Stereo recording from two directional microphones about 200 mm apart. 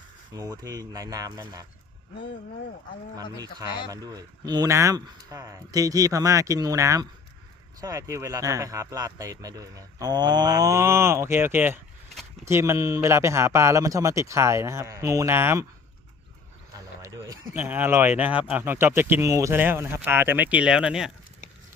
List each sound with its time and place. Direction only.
0.3 s speech: 20° right (ahead or behind)
3.3 s speech: 20° right (ahead or behind)
16.7 s a sound: 15° right (ahead or behind)
17.5 s speech: 10° right (ahead or behind)